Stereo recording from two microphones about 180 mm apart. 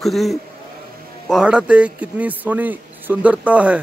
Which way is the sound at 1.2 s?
5° right (ahead or behind).